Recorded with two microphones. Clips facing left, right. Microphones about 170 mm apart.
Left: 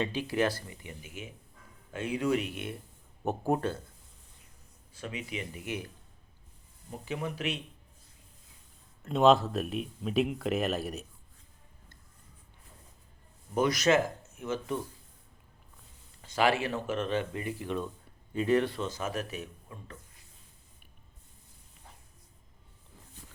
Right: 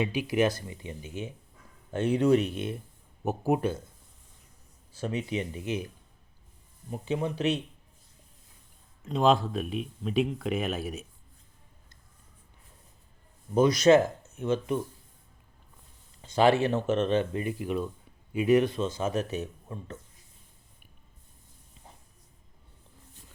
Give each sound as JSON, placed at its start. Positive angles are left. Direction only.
{"t": 0.0, "sound": "speech", "side_deg": -15}
{"t": 3.2, "sound": "speech", "side_deg": -10}
{"t": 4.9, "sound": "speech", "side_deg": -35}
{"t": 6.9, "sound": "speech", "side_deg": -25}
{"t": 9.0, "sound": "speech", "side_deg": 0}
{"t": 13.5, "sound": "speech", "side_deg": -25}
{"t": 16.2, "sound": "speech", "side_deg": -25}